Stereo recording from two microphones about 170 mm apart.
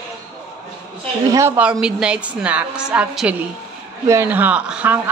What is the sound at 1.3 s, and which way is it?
A woman's voice, 15° right (ahead or behind).